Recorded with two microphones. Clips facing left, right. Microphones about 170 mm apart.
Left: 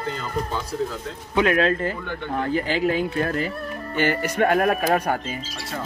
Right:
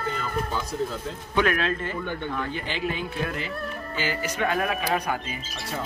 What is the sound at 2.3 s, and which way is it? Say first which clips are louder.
Speech: left 7 dB; 40° left (ahead or behind).